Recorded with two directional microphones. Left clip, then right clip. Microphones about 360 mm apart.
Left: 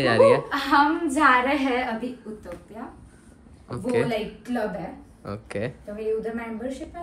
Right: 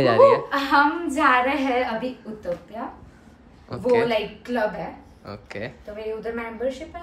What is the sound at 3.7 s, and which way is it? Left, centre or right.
Speech, centre.